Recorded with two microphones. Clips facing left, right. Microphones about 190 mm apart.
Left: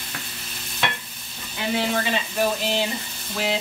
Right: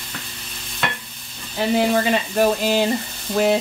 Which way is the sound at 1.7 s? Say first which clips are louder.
Right 6 dB; 45° right (ahead or behind).